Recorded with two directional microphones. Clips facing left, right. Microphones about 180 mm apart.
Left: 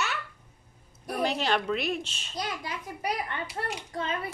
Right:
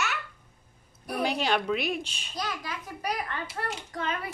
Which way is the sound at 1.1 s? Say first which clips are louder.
Even; 5° right (ahead or behind).